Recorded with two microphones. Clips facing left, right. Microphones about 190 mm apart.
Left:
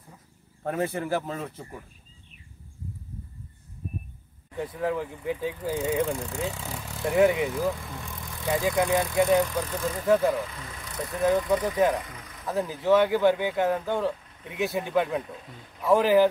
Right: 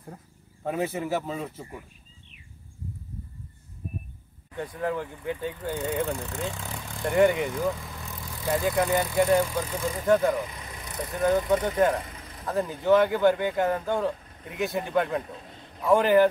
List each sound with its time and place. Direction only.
0.7 s speech: centre (ahead or behind)
4.6 s speech: centre (ahead or behind)
9.4 s speech: 10° right (ahead or behind)
10.0 s speech: centre (ahead or behind)
10.4 s vehicle: 15° right (ahead or behind)
11.0 s speech: centre (ahead or behind)